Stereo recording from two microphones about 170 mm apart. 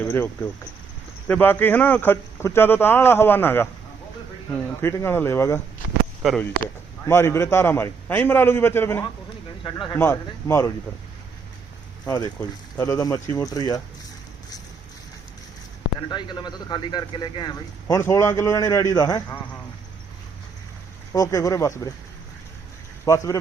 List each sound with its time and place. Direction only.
0.0 s a man's voice: 10° left (ahead or behind)
4.8 s a man's voice: 15° left (ahead or behind)
6.2 s speech: centre (ahead or behind)
7.1 s a man's voice: 15° left (ahead or behind)
9.6 s speech: 30° left (ahead or behind)
9.9 s a man's voice: 15° left (ahead or behind)
12.0 s a man's voice: 20° left (ahead or behind)
16.0 s speech: 25° left (ahead or behind)
21.1 s speech: 20° left (ahead or behind)
23.0 s speech: 20° left (ahead or behind)